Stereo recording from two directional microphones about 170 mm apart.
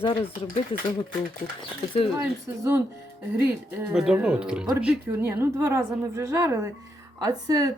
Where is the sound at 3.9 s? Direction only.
5° right (ahead or behind).